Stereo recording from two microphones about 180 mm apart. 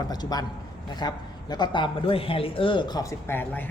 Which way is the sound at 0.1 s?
20° left (ahead or behind).